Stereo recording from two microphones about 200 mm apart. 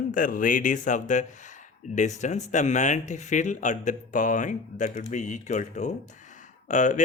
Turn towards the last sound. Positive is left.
turn(degrees=35)  # may be behind; listen again after turning